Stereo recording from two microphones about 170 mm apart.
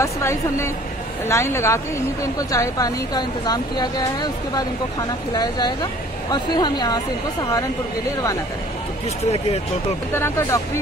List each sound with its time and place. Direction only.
0.0 s a woman's voice: 15° left (ahead or behind)
9.2 s speech: 40° left (ahead or behind)
10.1 s a woman's voice: 15° left (ahead or behind)